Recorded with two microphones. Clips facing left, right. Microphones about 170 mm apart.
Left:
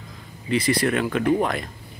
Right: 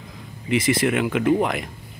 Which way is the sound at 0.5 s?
20° right (ahead or behind).